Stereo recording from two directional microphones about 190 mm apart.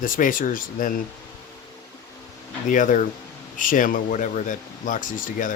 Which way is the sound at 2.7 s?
40° left (ahead or behind).